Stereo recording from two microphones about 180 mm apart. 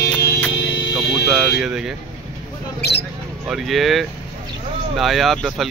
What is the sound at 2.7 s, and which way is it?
Speech, 65° left (ahead or behind).